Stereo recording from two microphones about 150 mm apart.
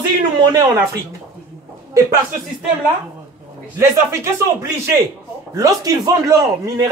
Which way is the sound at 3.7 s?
20° right (ahead or behind).